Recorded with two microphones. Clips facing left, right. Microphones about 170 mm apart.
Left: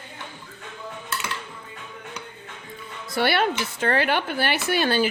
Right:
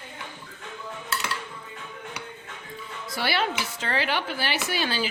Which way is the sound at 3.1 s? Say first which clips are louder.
Left 5 dB; 55° left (ahead or behind).